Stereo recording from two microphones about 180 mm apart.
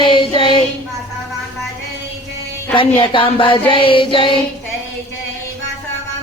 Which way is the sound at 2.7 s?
30° left (ahead or behind).